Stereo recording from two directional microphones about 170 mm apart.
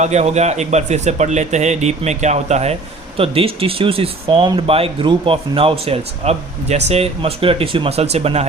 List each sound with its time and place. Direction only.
0.0 s speech: 40° right (ahead or behind)